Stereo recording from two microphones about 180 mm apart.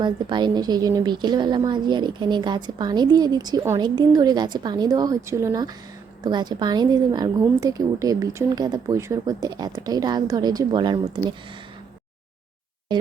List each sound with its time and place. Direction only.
0.0 s a woman's voice: 25° right (ahead or behind)